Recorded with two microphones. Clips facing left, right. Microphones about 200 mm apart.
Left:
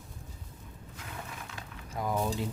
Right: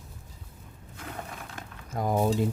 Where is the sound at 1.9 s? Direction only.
45° right (ahead or behind).